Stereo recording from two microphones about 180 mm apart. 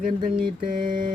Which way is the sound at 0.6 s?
50° right (ahead or behind).